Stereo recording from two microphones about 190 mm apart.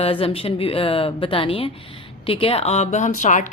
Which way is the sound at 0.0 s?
30° left (ahead or behind).